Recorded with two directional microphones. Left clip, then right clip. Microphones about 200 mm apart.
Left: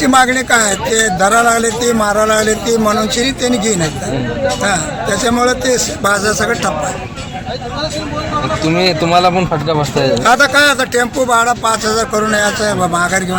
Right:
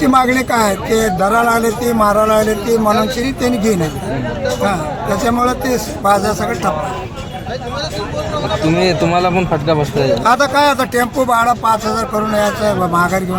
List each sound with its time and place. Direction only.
0.0 s speech: centre (ahead or behind)
8.6 s a man's voice: 40° left (ahead or behind)
10.2 s speech: centre (ahead or behind)